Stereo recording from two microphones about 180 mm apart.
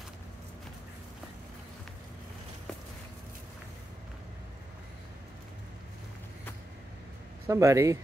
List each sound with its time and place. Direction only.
7.4 s speech: 15° right (ahead or behind)